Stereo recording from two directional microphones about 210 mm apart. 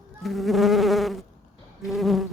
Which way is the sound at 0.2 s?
Centre (ahead or behind).